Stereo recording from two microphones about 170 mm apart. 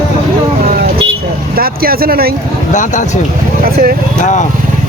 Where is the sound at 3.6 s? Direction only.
60° right (ahead or behind).